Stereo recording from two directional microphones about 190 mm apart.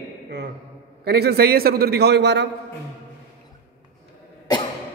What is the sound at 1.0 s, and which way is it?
A man's voice, 55° right (ahead or behind).